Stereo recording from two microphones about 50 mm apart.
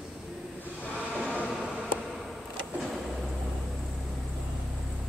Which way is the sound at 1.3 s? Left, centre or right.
Right.